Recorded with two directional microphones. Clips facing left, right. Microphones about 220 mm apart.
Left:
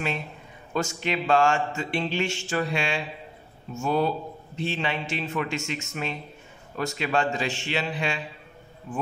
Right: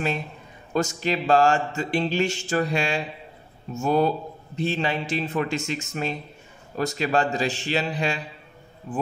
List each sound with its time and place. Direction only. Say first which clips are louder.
0.7 s speech: right 3 dB; 40° right (ahead or behind)